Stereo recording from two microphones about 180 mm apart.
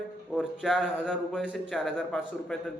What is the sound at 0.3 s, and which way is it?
A man's voice, centre (ahead or behind).